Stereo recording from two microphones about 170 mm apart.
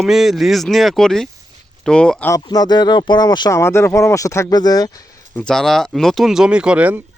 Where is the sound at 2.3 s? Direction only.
20° left (ahead or behind).